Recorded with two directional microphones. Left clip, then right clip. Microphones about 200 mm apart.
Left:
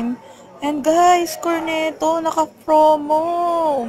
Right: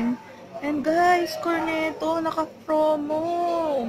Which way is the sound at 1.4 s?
15° left (ahead or behind).